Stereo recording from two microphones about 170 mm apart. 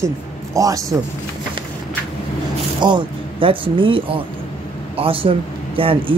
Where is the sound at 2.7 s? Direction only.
25° right (ahead or behind).